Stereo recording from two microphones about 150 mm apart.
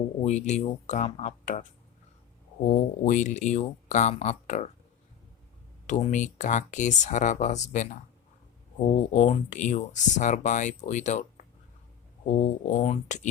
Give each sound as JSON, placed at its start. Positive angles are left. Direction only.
{"t": 0.2, "sound": "speech", "side_deg": 50}
{"t": 2.6, "sound": "speech", "side_deg": 60}
{"t": 5.8, "sound": "speech", "side_deg": 55}
{"t": 8.9, "sound": "speech", "side_deg": 55}